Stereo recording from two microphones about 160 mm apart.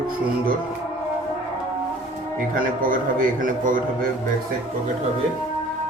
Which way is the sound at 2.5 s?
60° right (ahead or behind).